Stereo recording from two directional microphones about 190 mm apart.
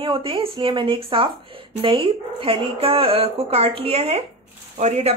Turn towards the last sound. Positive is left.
turn(degrees=-35)  # may be behind; listen again after turning